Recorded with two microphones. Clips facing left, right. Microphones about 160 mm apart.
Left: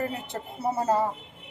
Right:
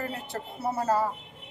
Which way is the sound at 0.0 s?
20° left (ahead or behind).